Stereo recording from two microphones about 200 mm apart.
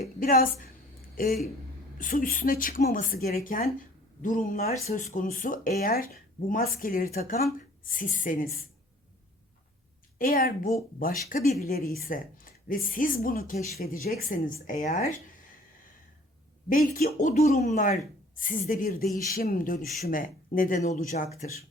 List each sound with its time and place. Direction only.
0.2 s speech: 45° left (ahead or behind)
10.2 s speech: 50° left (ahead or behind)
16.6 s speech: 45° left (ahead or behind)